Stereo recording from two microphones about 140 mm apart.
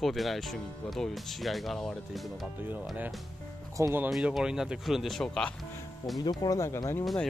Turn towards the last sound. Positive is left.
turn(degrees=20)  # may be behind; listen again after turning